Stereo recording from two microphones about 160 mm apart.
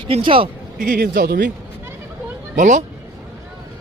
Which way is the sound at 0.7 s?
80° right.